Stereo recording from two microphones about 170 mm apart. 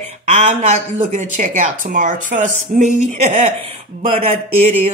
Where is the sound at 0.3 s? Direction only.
40° right (ahead or behind).